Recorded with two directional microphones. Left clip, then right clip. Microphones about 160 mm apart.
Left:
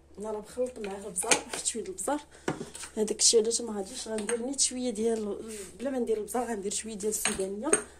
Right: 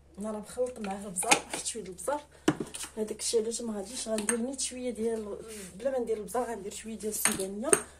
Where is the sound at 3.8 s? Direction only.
35° left (ahead or behind).